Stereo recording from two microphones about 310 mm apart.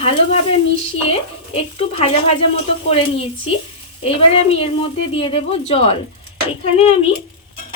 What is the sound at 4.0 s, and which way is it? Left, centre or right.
Speech, centre.